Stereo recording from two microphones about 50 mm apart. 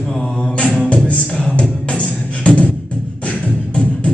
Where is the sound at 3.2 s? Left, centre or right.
Left.